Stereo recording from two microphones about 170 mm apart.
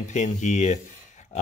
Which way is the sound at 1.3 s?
40° left (ahead or behind).